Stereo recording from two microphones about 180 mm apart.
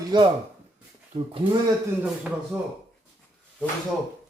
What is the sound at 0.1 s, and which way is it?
Speech, 25° right (ahead or behind).